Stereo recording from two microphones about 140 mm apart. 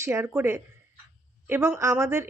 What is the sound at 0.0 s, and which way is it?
A woman's voice, 15° right (ahead or behind).